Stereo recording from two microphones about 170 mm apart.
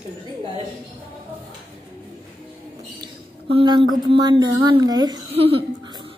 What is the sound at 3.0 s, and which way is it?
A woman's voice, 30° right (ahead or behind).